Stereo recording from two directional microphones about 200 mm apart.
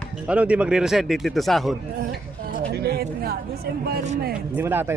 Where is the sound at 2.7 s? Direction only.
55° right (ahead or behind).